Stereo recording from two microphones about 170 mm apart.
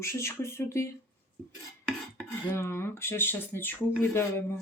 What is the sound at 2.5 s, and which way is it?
Speech, 15° left (ahead or behind).